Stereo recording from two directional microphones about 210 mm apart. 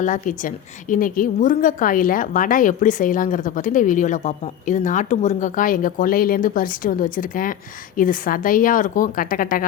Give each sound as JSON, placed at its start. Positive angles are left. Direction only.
{"t": 0.0, "sound": "a woman's voice", "side_deg": 35}